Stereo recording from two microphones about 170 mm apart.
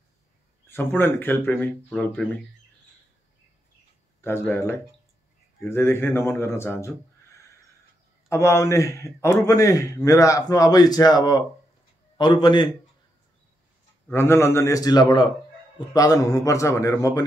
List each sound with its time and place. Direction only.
0.7 s speech: 15° left (ahead or behind)
4.2 s speech: 15° left (ahead or behind)
8.3 s a man's voice: 15° left (ahead or behind)
14.0 s a man's voice: 15° left (ahead or behind)